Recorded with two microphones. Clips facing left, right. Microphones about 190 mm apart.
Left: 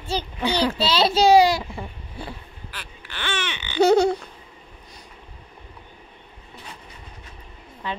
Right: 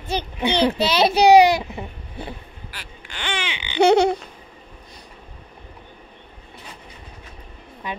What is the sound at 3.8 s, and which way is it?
Laughter, 70° right (ahead or behind).